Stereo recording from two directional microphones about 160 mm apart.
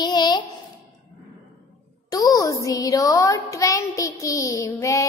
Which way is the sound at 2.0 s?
20° left (ahead or behind).